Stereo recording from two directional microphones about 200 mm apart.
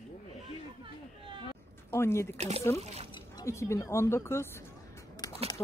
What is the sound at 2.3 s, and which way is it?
Speech, 35° right (ahead or behind).